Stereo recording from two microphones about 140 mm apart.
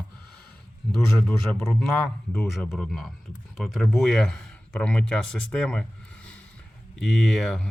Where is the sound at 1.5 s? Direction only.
Centre (ahead or behind).